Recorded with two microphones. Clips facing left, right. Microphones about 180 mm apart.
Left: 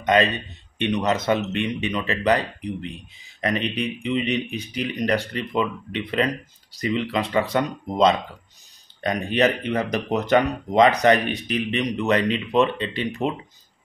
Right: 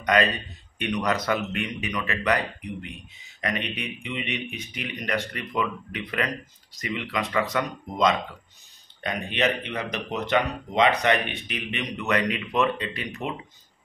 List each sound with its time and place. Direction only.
0.0 s speech: 25° left (ahead or behind)